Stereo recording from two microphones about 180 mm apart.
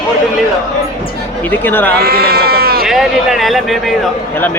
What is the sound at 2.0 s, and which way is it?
Speech, 60° right (ahead or behind).